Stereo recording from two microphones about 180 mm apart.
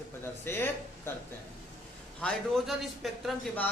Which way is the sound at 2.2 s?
5° left (ahead or behind).